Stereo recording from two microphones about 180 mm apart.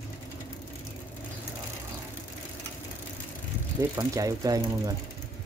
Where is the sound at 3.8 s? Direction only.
20° right (ahead or behind).